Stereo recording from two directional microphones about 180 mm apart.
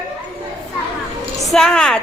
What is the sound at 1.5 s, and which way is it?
Speech, 5° left (ahead or behind).